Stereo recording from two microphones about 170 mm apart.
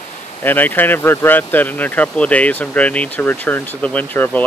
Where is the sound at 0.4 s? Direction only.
10° left (ahead or behind).